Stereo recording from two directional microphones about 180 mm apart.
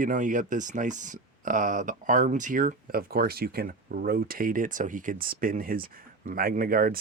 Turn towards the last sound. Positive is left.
turn(degrees=-55)  # may be behind; listen again after turning